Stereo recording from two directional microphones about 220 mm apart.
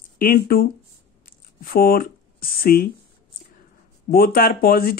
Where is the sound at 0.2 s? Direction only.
40° left (ahead or behind).